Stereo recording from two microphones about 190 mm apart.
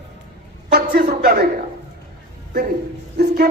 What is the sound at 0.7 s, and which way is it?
Speech, 55° right (ahead or behind).